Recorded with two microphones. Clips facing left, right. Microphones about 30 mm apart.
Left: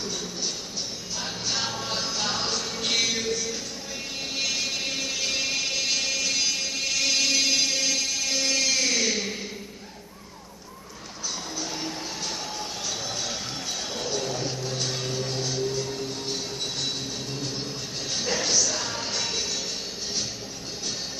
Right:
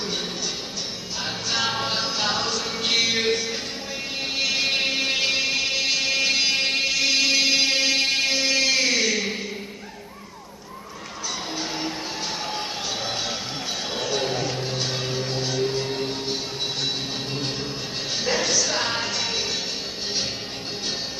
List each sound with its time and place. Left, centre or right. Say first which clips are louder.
1.7 s music: right 5 dB; right
3.2 s music: right 5 dB; right
4.3 s music: right 5 dB; right
6.1 s music: right 5 dB; right
6.8 s music: right 4 dB; right
8.4 s music: right 4 dB; right
12.5 s a sound: right 4 dB; right
14.1 s music: right 5 dB; right
15.6 s music: right 4 dB; right
16.3 s music: right 3 dB; right
18.1 s music: right 4 dB; right
18.6 s music: right 4 dB; right
19.1 s music: right 3 dB; right